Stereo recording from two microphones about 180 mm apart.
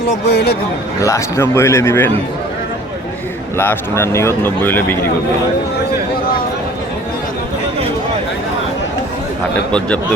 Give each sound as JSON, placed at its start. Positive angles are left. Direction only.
{"t": 0.3, "sound": "speech", "side_deg": 60}
{"t": 1.0, "sound": "speech", "side_deg": 15}
{"t": 3.6, "sound": "speech", "side_deg": 15}